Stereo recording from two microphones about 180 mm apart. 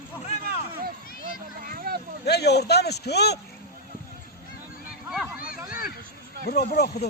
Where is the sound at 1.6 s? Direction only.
55° right (ahead or behind).